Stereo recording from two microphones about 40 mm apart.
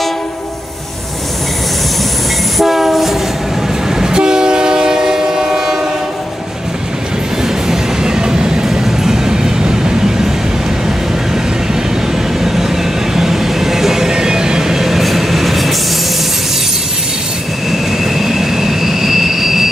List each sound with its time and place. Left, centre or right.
2.6 s train: centre
4.0 s train: centre
7.4 s train: centre
12.4 s vehicle: centre
17.6 s train: centre